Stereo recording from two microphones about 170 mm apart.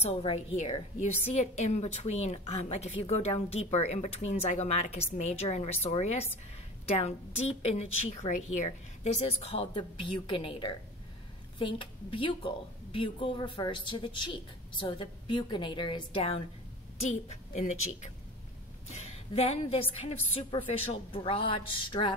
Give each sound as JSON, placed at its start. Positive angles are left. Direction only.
{"t": 0.0, "sound": "a woman's voice", "side_deg": 35}
{"t": 17.1, "sound": "a woman's voice", "side_deg": 45}